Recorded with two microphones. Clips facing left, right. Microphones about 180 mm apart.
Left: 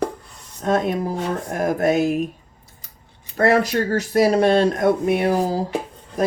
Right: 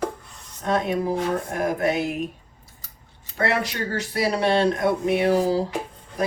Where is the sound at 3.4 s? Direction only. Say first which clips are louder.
Left 7 dB; 45° left (ahead or behind).